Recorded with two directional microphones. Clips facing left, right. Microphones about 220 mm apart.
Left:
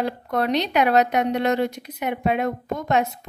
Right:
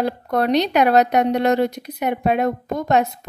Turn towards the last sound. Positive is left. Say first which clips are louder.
# right 3 dB
turn(degrees=-40)  # may be behind; listen again after turning